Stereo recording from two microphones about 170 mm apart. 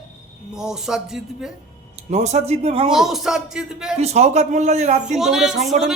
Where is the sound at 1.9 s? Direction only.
40° right (ahead or behind).